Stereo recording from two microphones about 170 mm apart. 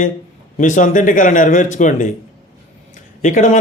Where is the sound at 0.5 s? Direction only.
50° left (ahead or behind).